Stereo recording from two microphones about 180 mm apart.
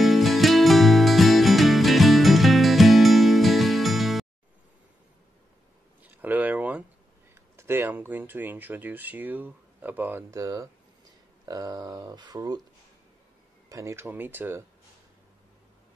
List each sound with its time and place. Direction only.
0.0 s music: centre (ahead or behind)
6.2 s a sound: 10° right (ahead or behind)
7.5 s speech: 15° right (ahead or behind)
13.7 s speech: 15° right (ahead or behind)